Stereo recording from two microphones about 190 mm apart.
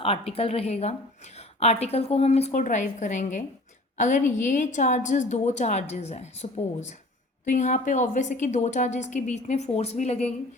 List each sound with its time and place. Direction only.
0.0 s a woman's voice: 30° left (ahead or behind)